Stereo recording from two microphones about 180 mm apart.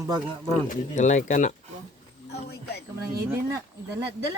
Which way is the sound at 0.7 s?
40° left (ahead or behind).